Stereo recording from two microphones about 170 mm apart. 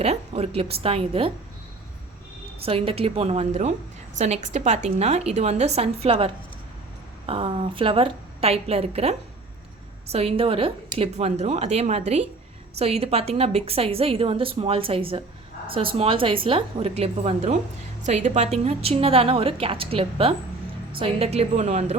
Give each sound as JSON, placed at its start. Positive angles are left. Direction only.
{"t": 0.0, "sound": "a woman's voice", "side_deg": -40}
{"t": 2.6, "sound": "a woman's voice", "side_deg": -35}